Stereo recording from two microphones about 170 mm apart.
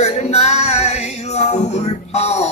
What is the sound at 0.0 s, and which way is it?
Music, 40° left (ahead or behind).